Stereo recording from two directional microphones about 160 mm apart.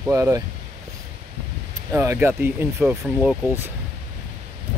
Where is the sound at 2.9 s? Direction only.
5° right (ahead or behind).